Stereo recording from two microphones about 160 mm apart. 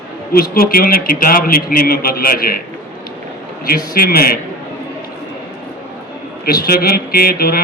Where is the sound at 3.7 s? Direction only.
70° left (ahead or behind).